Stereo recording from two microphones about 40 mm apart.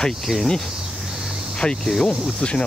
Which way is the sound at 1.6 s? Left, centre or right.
Left.